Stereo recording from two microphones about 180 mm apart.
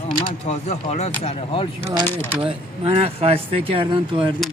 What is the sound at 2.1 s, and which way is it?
Speech, 10° left (ahead or behind).